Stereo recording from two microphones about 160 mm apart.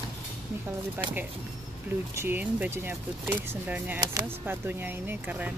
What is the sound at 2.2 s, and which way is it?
Speech, 10° right (ahead or behind).